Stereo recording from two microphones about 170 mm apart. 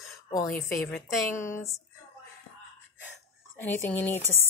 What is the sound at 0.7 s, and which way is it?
Speech, centre (ahead or behind).